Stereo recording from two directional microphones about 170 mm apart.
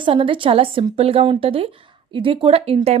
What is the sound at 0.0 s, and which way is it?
Speech, 30° right (ahead or behind).